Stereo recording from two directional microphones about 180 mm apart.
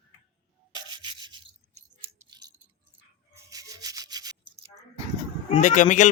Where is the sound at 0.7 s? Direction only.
25° right (ahead or behind).